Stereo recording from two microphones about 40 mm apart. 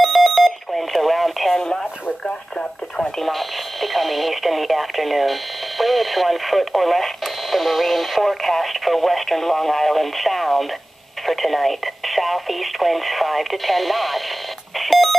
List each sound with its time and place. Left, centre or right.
0.0 s alarm clock: centre
1.6 s radio: centre
3.0 s speech: centre
14.8 s telephone dialing: centre